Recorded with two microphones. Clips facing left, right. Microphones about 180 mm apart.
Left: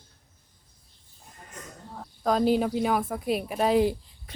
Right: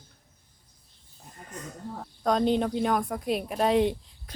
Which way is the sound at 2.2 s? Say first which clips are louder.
Left 1 dB; 5° left (ahead or behind).